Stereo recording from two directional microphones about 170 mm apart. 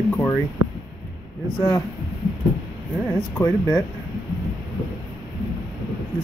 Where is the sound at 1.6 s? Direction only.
15° left (ahead or behind).